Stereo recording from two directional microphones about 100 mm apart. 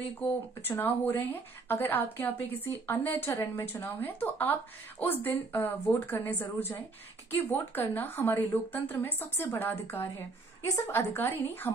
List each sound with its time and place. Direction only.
0.7 s a woman's voice: 20° left (ahead or behind)